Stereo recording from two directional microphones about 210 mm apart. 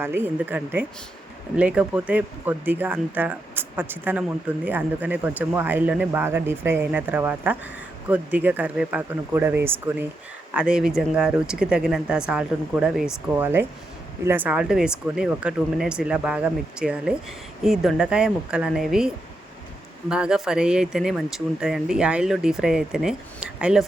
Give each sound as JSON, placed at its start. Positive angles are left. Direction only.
{"t": 0.0, "sound": "speech", "side_deg": -10}